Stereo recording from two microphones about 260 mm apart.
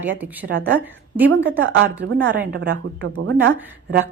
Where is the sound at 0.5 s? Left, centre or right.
Right.